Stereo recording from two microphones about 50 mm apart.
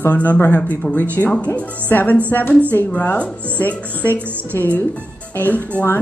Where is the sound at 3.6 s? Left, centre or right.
Left.